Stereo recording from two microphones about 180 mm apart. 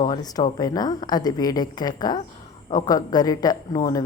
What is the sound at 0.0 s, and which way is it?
Speech, 20° left (ahead or behind).